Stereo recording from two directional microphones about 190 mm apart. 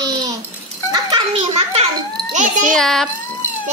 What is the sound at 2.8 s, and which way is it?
Speech, centre (ahead or behind).